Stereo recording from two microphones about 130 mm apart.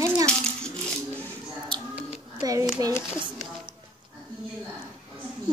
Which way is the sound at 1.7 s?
35° right (ahead or behind).